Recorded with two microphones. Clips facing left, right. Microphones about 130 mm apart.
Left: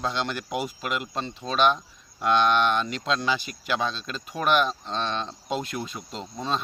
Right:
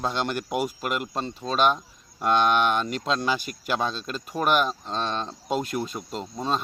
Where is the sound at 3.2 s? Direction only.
45° right (ahead or behind).